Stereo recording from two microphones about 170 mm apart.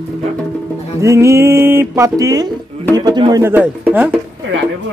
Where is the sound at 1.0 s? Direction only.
15° right (ahead or behind).